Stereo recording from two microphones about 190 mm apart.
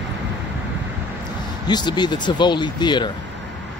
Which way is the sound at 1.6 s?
20° left (ahead or behind).